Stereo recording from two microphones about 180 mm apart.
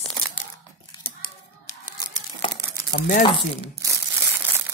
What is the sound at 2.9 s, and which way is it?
Speech, 55° left (ahead or behind).